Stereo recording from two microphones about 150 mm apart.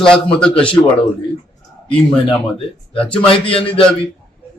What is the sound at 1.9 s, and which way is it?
Speech, 5° left (ahead or behind).